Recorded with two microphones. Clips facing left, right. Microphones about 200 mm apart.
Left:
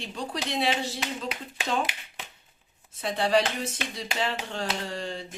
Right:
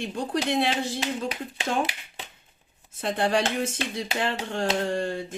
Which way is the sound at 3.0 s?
50° right (ahead or behind).